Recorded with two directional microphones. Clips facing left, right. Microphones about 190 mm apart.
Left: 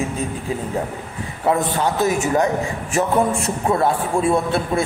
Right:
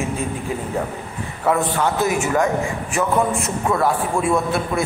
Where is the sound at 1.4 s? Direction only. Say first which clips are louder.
Even; 25° left (ahead or behind).